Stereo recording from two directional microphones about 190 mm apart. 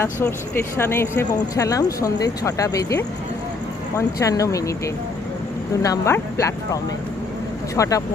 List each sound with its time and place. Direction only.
0.0 s speech: 15° left (ahead or behind)
5.8 s speech: 15° left (ahead or behind)
7.8 s speech: 15° left (ahead or behind)